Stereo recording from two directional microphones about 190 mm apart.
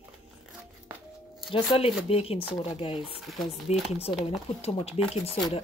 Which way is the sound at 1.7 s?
30° left (ahead or behind).